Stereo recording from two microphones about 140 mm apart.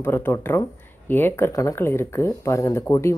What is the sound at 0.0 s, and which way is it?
Speech, 15° left (ahead or behind).